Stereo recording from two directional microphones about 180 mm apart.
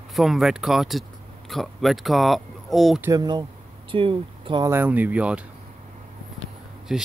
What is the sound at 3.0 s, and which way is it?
Speech, 20° right (ahead or behind).